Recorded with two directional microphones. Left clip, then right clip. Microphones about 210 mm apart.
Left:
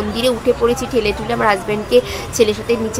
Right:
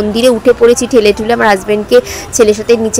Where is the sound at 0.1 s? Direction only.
25° right (ahead or behind).